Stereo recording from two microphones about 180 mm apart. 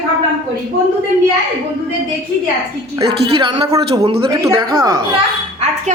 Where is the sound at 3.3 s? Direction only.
30° right (ahead or behind).